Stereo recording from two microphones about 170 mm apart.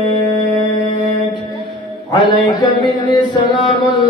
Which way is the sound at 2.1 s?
25° left (ahead or behind).